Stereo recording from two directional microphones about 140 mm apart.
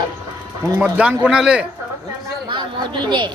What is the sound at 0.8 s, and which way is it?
Speech, 10° right (ahead or behind).